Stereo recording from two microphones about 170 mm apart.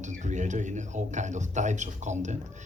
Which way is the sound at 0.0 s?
45° right (ahead or behind).